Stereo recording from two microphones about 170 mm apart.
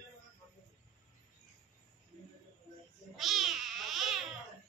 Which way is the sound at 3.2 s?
Centre (ahead or behind).